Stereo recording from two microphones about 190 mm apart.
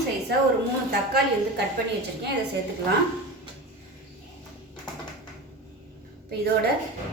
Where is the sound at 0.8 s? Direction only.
60° right (ahead or behind).